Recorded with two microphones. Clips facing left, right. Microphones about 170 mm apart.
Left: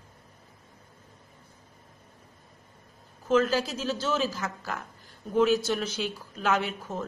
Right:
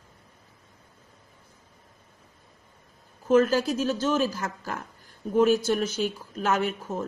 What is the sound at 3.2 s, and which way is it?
Speech, 50° right (ahead or behind).